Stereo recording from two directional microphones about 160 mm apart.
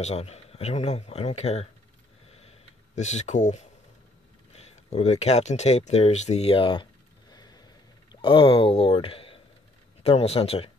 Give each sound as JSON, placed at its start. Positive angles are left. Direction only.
{"t": 0.0, "sound": "speech", "side_deg": 40}
{"t": 2.2, "sound": "sniff", "side_deg": 40}
{"t": 3.0, "sound": "speech", "side_deg": 45}